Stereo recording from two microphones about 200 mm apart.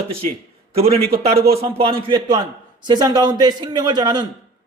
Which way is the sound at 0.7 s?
30° right (ahead or behind).